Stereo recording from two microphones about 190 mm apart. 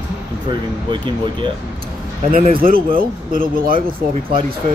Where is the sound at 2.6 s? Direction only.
50° right (ahead or behind).